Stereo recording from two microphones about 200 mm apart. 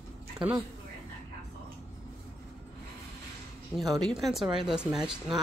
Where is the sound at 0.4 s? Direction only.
5° right (ahead or behind).